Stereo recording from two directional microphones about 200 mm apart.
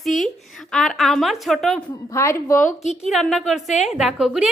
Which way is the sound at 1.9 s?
15° left (ahead or behind).